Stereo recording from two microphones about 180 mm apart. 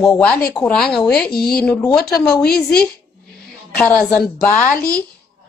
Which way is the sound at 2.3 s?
60° left (ahead or behind).